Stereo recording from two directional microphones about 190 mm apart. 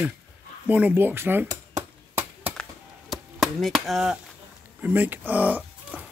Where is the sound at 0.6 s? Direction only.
5° right (ahead or behind).